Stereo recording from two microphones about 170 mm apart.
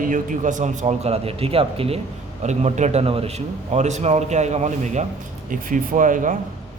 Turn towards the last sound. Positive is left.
turn(degrees=-50)  # may be behind; listen again after turning